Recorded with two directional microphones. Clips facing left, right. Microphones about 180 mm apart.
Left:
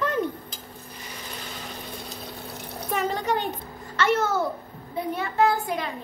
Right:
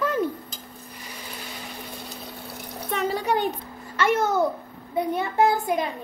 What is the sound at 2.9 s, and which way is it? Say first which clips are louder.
A child's voice: right 1 dB; 10° right (ahead or behind).